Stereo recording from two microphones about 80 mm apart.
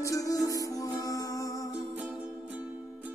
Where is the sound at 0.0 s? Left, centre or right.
Left.